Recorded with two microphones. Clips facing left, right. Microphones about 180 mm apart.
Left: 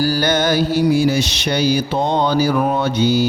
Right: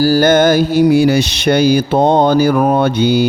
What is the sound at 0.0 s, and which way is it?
Mantra, 45° right (ahead or behind).